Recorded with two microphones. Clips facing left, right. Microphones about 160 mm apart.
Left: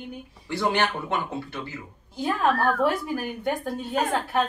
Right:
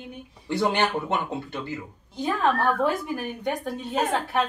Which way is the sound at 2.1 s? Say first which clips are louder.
Even; 5° left (ahead or behind).